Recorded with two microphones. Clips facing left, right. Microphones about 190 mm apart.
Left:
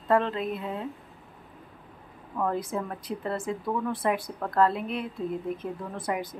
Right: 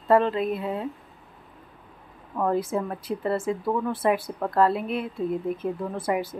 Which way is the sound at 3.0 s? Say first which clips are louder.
Right 5 dB; 5° right (ahead or behind).